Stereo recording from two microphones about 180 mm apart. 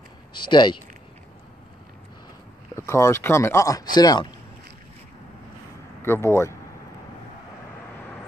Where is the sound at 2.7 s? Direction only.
15° left (ahead or behind).